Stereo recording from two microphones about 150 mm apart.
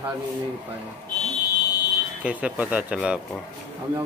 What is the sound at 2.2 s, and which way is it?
Speech, 10° right (ahead or behind).